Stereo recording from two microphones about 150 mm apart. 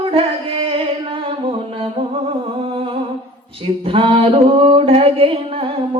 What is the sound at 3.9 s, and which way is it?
Music, 35° right (ahead or behind).